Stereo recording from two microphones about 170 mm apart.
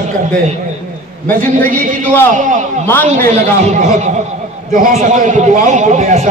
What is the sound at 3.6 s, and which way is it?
A man's voice, 45° right (ahead or behind).